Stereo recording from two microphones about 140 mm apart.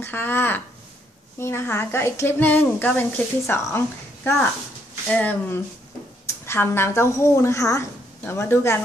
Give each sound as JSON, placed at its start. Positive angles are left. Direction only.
{"t": 0.0, "sound": "a woman's voice", "side_deg": 15}